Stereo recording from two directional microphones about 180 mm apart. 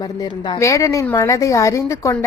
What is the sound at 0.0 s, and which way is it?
A woman's voice, 25° left (ahead or behind).